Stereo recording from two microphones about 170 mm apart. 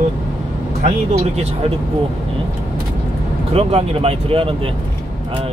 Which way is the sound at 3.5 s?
35° right (ahead or behind).